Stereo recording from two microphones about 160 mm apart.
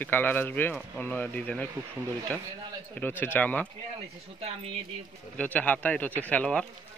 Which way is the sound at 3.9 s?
40° right (ahead or behind).